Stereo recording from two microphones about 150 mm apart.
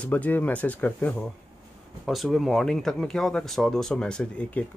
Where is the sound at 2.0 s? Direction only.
Centre (ahead or behind).